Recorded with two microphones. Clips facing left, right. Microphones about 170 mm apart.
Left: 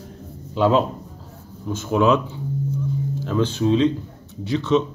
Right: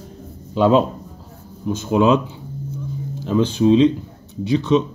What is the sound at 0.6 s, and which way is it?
Speech, 20° right (ahead or behind).